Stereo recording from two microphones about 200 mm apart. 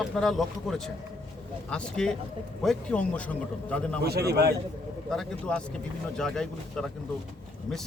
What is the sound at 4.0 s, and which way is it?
Speech, 55° right (ahead or behind).